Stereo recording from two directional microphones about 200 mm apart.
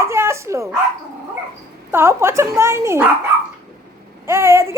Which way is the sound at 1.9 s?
10° right (ahead or behind).